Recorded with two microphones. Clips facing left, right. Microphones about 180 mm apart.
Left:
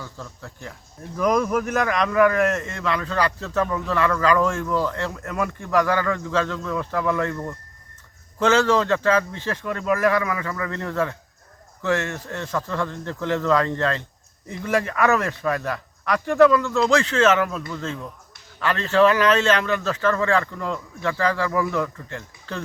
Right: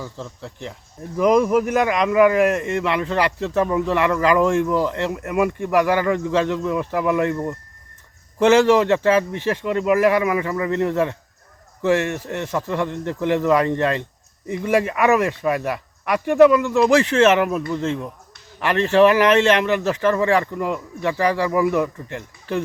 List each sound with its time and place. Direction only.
0.0 s speech: 20° right (ahead or behind)